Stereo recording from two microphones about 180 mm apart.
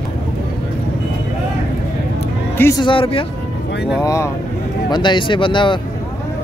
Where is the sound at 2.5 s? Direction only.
15° left (ahead or behind).